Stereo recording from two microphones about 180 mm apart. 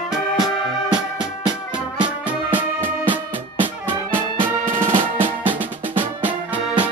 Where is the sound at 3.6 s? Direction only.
10° right (ahead or behind).